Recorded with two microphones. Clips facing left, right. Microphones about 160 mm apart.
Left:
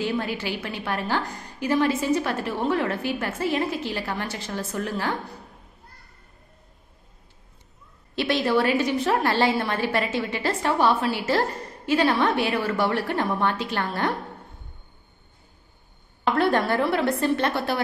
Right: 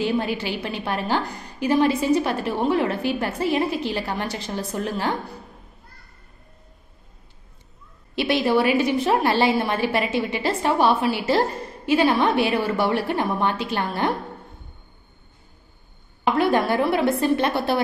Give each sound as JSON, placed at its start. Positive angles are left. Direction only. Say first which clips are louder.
{"t": 0.0, "sound": "a woman's voice", "louder": "right 3 dB", "side_deg": -15}
{"t": 8.2, "sound": "a woman's voice", "louder": "right 2 dB", "side_deg": -15}
{"t": 16.3, "sound": "a woman's voice", "louder": "right 2 dB", "side_deg": -10}